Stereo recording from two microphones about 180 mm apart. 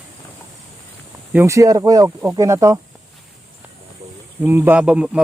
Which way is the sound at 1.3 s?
15° right (ahead or behind).